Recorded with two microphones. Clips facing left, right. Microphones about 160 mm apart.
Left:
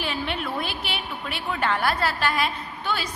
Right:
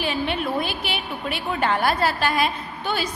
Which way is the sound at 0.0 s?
5° right (ahead or behind).